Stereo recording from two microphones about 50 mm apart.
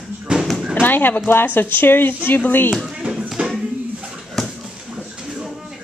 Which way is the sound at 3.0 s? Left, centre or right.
Right.